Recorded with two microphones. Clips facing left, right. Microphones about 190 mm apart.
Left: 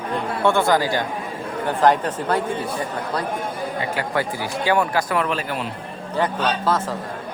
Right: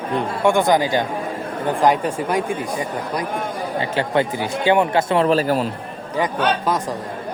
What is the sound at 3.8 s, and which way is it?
Speech, 25° right (ahead or behind).